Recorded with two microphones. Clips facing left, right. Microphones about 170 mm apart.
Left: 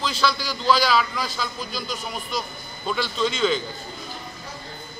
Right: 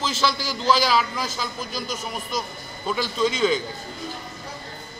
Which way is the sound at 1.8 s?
20° right (ahead or behind).